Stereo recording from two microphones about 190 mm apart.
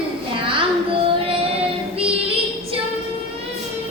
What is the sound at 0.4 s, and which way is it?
Music, 30° right (ahead or behind).